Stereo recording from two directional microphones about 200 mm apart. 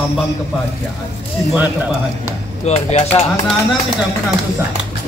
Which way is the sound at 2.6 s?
30° left (ahead or behind).